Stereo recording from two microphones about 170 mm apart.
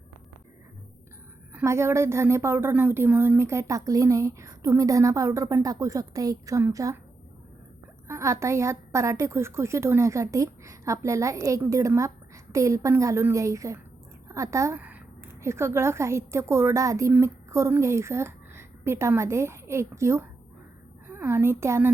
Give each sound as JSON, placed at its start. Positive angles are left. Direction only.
{"t": 1.5, "sound": "a woman's voice", "side_deg": -15}
{"t": 8.0, "sound": "a woman's voice", "side_deg": -15}